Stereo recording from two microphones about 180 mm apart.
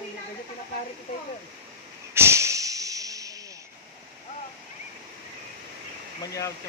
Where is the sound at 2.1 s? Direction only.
15° right (ahead or behind).